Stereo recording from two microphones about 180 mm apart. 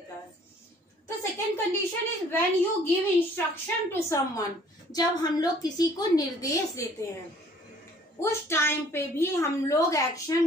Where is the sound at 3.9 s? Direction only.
15° left (ahead or behind).